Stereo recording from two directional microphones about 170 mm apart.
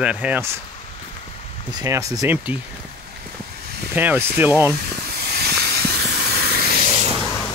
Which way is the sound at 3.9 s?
10° right (ahead or behind).